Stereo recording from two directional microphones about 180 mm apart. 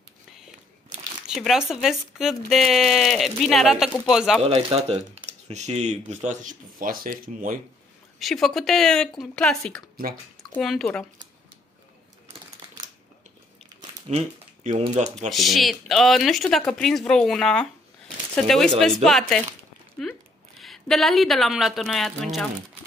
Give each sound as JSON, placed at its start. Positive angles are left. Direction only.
{"t": 1.2, "sound": "speech", "side_deg": -5}
{"t": 4.4, "sound": "speech", "side_deg": -35}
{"t": 8.2, "sound": "speech", "side_deg": 0}
{"t": 14.0, "sound": "speech", "side_deg": -40}
{"t": 15.2, "sound": "speech", "side_deg": 0}